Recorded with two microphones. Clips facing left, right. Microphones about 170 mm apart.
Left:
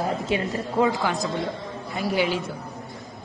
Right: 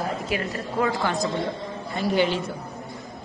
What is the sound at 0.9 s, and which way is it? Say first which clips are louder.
A woman's voice: right 1 dB; centre (ahead or behind).